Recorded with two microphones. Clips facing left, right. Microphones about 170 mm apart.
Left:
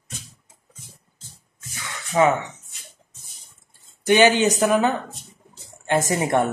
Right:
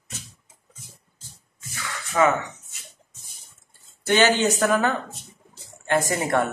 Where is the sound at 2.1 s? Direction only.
20° left (ahead or behind).